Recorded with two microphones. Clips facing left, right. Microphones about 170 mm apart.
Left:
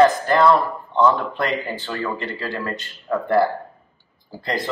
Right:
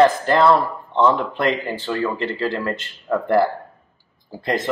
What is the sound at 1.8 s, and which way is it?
Speech, 30° right (ahead or behind).